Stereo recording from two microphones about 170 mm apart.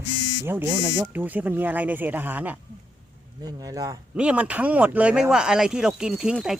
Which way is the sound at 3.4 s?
20° right (ahead or behind).